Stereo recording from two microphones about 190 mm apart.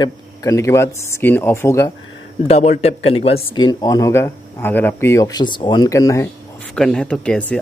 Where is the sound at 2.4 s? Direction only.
35° left (ahead or behind).